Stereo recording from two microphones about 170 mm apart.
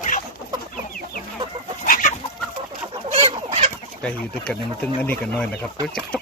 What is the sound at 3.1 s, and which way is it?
Fowl, 35° right (ahead or behind).